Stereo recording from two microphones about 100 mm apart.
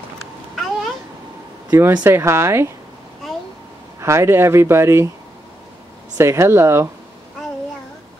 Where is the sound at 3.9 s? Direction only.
30° right (ahead or behind).